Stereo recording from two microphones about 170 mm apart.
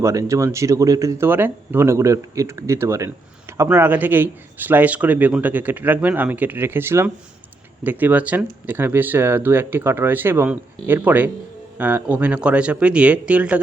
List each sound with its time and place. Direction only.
0.0 s a man's voice: 20° right (ahead or behind)